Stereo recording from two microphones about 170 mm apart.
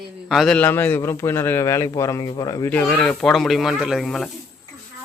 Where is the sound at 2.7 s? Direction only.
10° left (ahead or behind).